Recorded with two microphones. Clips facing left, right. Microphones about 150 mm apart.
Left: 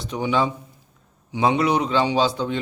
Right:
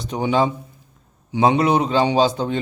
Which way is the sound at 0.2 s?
35° right (ahead or behind).